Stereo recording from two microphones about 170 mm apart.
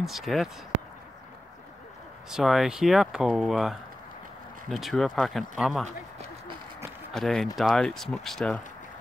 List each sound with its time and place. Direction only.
0.0 s speech: centre (ahead or behind)
2.2 s speech: centre (ahead or behind)
5.9 s a sound: 35° right (ahead or behind)
7.1 s speech: 5° left (ahead or behind)